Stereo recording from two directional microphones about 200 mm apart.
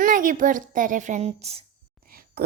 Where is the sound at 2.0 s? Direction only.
50° right (ahead or behind).